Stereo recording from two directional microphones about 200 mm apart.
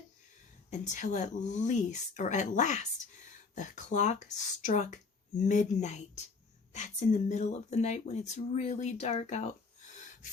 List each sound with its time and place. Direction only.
0.7 s speech: 35° left (ahead or behind)